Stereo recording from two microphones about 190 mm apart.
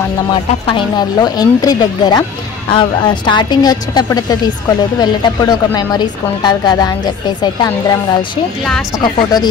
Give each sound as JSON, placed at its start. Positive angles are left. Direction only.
{"t": 0.3, "sound": "a woman's voice", "side_deg": 25}
{"t": 8.6, "sound": "speech", "side_deg": 5}